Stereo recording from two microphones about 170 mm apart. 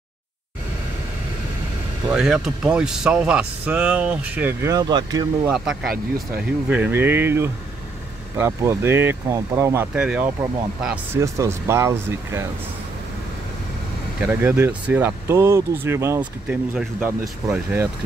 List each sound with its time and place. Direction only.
2.0 s speech: 5° right (ahead or behind); by 5.5 s 25° right (ahead or behind)
5.5 s speech: 5° right (ahead or behind)
5.9 s speech: 60° right (ahead or behind)
6.7 s speech: 10° right (ahead or behind)
14.2 s speech: 10° right (ahead or behind)